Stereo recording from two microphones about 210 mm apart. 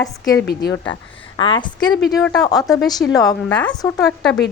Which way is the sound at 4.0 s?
5° left (ahead or behind).